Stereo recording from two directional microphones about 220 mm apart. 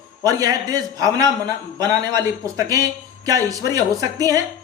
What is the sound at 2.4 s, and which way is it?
A man's voice, 15° right (ahead or behind).